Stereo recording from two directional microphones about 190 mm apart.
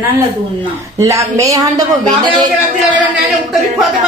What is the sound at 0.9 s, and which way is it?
Speech, 15° right (ahead or behind).